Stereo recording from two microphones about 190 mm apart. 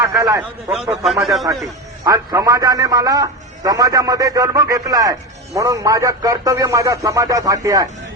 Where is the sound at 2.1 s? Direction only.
20° right (ahead or behind).